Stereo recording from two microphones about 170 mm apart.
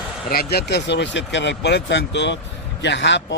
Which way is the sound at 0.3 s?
65° left (ahead or behind).